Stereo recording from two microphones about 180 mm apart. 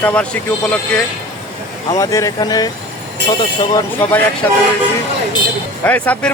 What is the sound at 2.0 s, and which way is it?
Speech, 20° left (ahead or behind).